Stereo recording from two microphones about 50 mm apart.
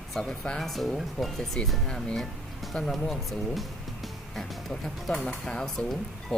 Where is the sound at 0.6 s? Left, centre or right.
Centre.